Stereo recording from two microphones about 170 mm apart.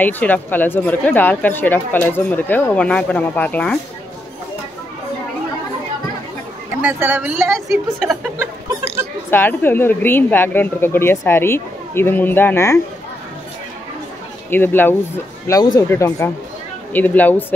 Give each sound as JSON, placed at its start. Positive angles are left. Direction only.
{"t": 0.0, "sound": "speech", "side_deg": 10}
{"t": 6.8, "sound": "a sound", "side_deg": -10}
{"t": 7.3, "sound": "a woman's voice", "side_deg": 0}
{"t": 8.4, "sound": "a sound", "side_deg": -15}
{"t": 9.3, "sound": "speech", "side_deg": 10}
{"t": 14.5, "sound": "speech", "side_deg": 10}